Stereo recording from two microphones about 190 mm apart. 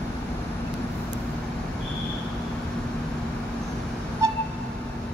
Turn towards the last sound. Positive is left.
turn(degrees=-15)  # may be behind; listen again after turning